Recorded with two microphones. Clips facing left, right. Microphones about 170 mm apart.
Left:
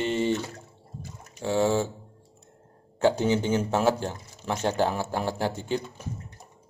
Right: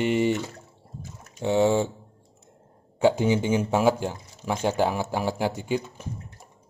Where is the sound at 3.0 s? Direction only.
10° right (ahead or behind).